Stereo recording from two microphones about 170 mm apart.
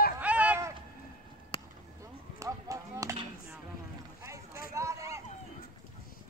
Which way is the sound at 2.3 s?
20° right (ahead or behind).